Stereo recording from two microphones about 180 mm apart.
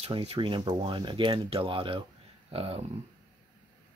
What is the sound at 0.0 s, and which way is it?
Speech, 30° right (ahead or behind).